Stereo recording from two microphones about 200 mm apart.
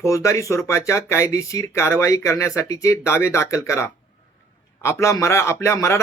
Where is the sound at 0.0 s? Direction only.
15° left (ahead or behind).